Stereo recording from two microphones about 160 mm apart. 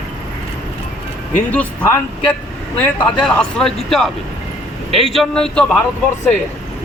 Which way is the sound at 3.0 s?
5° left (ahead or behind).